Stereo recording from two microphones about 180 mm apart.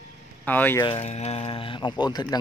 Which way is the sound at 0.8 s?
30° left (ahead or behind).